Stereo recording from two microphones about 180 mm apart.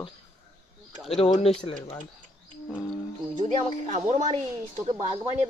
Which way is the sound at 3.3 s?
40° right (ahead or behind).